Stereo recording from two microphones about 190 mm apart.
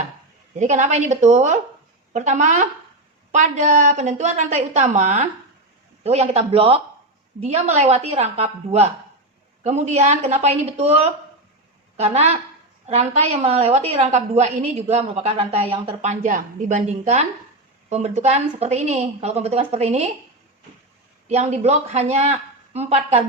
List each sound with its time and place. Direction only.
0.6 s a woman's voice: 40° right (ahead or behind)
21.2 s a woman's voice: 35° right (ahead or behind)